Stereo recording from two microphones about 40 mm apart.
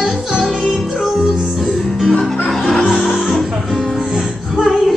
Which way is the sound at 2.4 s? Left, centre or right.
Centre.